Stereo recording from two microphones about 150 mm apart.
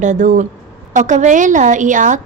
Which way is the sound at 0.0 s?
55° right (ahead or behind).